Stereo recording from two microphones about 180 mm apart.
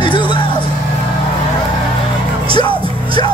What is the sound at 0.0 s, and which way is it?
Music, 25° left (ahead or behind).